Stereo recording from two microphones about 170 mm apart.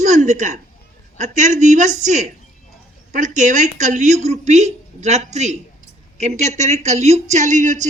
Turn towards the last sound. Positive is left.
turn(degrees=-45)  # may be behind; listen again after turning